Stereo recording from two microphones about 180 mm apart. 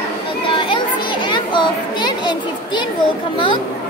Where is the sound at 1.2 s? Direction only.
25° left (ahead or behind).